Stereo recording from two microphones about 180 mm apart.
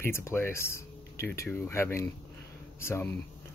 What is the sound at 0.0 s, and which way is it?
Speech, 15° left (ahead or behind).